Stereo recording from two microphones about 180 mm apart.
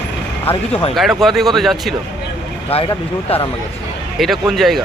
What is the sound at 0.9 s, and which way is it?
Speech, centre (ahead or behind).